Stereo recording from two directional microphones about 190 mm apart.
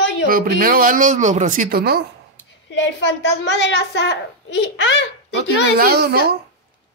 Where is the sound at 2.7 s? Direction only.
70° left (ahead or behind).